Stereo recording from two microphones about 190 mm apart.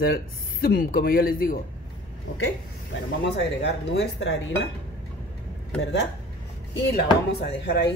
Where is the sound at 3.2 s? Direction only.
65° left (ahead or behind).